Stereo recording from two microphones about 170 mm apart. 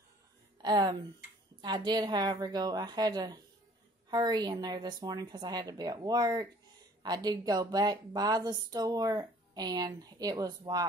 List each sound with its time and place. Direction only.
0.6 s a woman's voice: 25° right (ahead or behind)